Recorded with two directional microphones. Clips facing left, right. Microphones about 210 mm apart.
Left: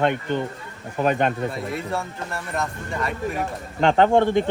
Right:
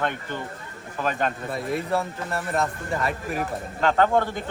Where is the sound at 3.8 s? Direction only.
25° left (ahead or behind).